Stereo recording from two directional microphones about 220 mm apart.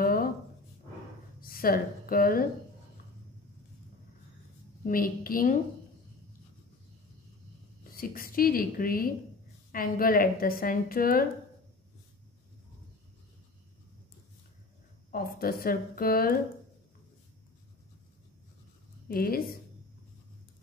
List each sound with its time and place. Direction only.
0.0 s a sound: 40° left (ahead or behind)
1.4 s a woman's voice: 40° left (ahead or behind)
4.8 s a woman's voice: 40° left (ahead or behind)
7.9 s a woman's voice: 40° left (ahead or behind)
15.0 s a woman's voice: 40° left (ahead or behind)
19.0 s a woman's voice: 40° left (ahead or behind)